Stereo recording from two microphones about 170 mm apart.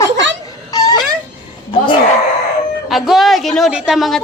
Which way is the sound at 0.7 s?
20° left (ahead or behind).